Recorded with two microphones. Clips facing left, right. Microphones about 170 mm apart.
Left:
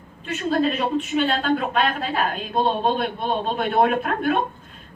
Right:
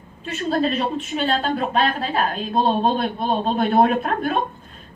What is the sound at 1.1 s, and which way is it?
A woman's voice, 35° right (ahead or behind).